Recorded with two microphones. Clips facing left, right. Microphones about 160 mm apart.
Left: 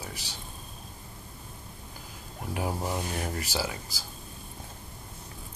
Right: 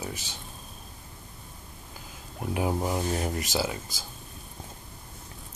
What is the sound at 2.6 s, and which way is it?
Speech, 20° right (ahead or behind).